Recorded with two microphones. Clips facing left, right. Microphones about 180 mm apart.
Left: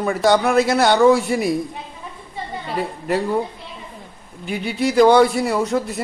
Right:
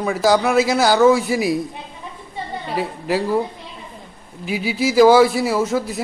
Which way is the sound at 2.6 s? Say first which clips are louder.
Right 1 dB; centre (ahead or behind).